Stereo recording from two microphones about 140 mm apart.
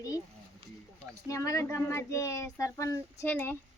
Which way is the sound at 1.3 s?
25° left (ahead or behind).